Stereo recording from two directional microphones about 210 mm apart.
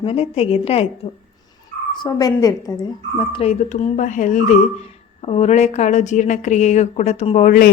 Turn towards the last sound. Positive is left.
turn(degrees=40)  # may be behind; listen again after turning